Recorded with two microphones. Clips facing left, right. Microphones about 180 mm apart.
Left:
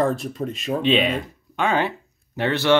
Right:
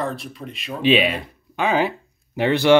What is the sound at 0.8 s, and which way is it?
Speech, 5° right (ahead or behind).